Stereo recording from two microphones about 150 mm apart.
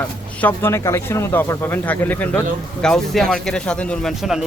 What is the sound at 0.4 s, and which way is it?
Speech, 15° left (ahead or behind).